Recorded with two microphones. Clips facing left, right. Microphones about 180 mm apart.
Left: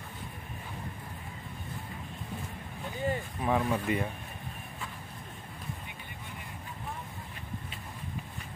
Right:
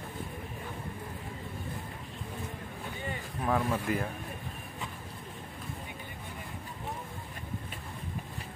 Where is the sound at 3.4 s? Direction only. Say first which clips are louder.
Even; 5° left (ahead or behind).